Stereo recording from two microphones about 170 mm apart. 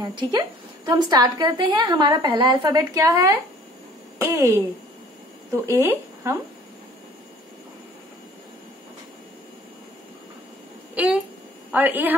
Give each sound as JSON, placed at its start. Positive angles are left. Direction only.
{"t": 0.0, "sound": "a woman's voice", "side_deg": -25}
{"t": 5.7, "sound": "speech", "side_deg": -15}
{"t": 11.0, "sound": "a man's voice", "side_deg": -10}